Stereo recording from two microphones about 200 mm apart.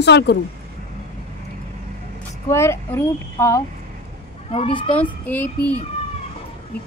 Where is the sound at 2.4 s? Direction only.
15° left (ahead or behind).